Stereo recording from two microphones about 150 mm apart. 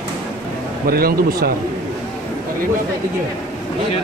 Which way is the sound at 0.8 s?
90° right.